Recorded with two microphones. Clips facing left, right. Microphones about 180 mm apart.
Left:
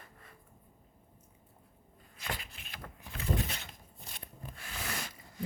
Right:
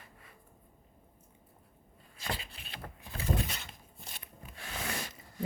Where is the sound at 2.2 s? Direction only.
30° right (ahead or behind).